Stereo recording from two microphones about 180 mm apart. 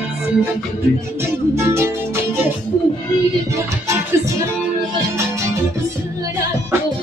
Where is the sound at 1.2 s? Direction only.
15° right (ahead or behind).